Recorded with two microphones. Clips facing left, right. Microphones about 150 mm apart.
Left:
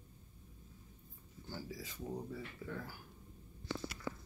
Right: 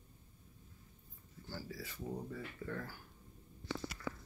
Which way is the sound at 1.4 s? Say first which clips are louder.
Even; 15° left (ahead or behind).